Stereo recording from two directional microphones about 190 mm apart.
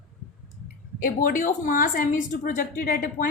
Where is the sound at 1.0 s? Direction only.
45° left (ahead or behind).